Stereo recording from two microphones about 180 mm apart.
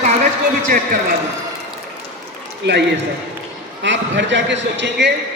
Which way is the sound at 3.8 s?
80° right.